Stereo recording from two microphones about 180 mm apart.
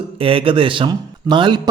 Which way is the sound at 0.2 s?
30° right (ahead or behind).